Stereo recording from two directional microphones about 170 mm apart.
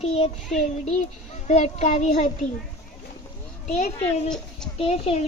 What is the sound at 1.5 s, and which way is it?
A child's voice, 40° left (ahead or behind).